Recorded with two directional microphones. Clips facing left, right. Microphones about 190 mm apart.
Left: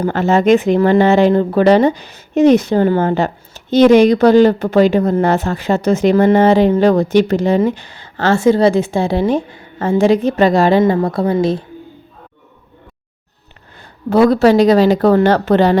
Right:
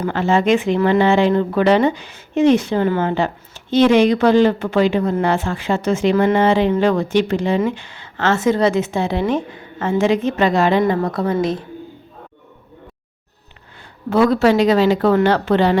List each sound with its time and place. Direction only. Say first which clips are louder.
0.0 s speech: left 4 dB; 40° left (ahead or behind)
14.1 s speech: left 4 dB; 35° left (ahead or behind)